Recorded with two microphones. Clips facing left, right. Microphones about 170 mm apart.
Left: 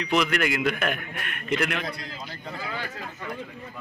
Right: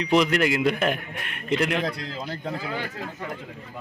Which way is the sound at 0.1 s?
30° right (ahead or behind).